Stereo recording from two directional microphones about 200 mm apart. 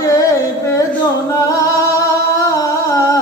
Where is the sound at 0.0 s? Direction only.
15° left (ahead or behind).